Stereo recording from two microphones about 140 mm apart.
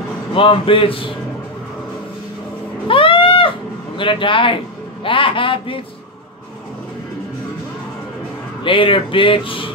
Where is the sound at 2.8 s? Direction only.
40° left (ahead or behind).